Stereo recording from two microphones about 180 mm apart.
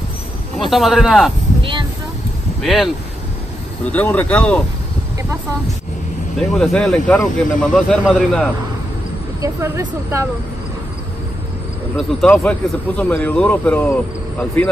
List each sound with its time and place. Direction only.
0.6 s speech: centre (ahead or behind)
1.6 s a sound: 25° right (ahead or behind)
2.6 s speech: centre (ahead or behind)
6.4 s speech: centre (ahead or behind)
9.4 s speech: 15° right (ahead or behind)
12.0 s speech: centre (ahead or behind)